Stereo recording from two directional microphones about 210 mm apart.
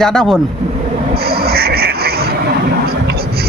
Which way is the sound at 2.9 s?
45° right (ahead or behind).